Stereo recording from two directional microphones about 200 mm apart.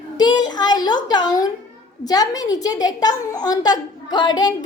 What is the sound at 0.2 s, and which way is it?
A woman's voice, 20° left (ahead or behind).